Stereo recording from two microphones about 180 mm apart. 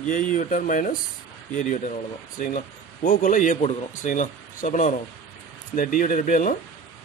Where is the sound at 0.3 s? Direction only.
45° left (ahead or behind).